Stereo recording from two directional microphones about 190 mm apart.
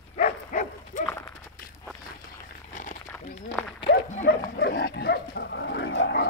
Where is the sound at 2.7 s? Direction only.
40° left (ahead or behind).